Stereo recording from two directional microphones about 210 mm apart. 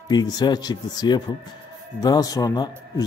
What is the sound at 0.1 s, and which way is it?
A man's voice, 20° left (ahead or behind).